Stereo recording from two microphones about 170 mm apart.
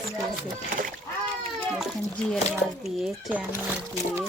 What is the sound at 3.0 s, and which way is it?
Speech, centre (ahead or behind).